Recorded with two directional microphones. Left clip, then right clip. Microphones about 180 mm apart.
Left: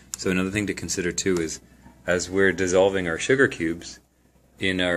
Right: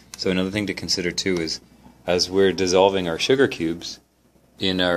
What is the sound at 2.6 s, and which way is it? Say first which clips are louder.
Speech: right 2 dB; 10° right (ahead or behind).